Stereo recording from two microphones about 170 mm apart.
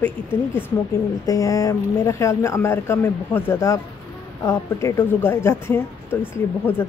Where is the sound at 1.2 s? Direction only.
20° left (ahead or behind).